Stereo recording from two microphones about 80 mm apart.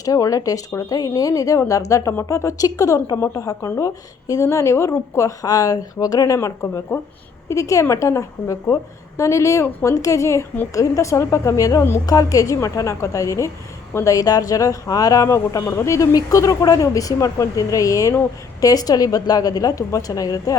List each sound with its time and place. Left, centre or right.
0.0 s a woman's voice: left